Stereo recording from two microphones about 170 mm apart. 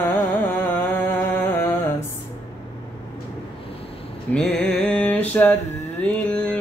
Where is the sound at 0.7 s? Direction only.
10° left (ahead or behind).